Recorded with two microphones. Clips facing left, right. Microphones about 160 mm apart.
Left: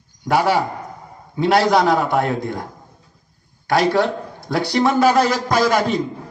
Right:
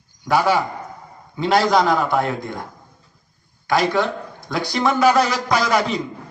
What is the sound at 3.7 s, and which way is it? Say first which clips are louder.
A man's voice: left 2 dB; 65° left (ahead or behind).